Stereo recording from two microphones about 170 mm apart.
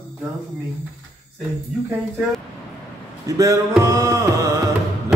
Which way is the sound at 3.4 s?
20° right (ahead or behind).